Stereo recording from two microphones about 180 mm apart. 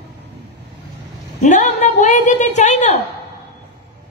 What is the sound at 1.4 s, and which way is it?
A woman's voice, 45° left (ahead or behind).